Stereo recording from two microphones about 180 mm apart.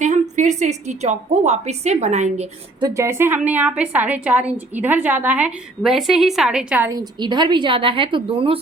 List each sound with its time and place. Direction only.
0.0 s a woman's voice: 40° right (ahead or behind)
2.8 s a woman's voice: 15° right (ahead or behind)
6.9 s a woman's voice: 25° right (ahead or behind)